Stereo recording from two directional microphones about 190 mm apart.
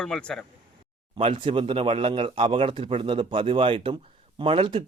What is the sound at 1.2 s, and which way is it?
Speech, 25° right (ahead or behind).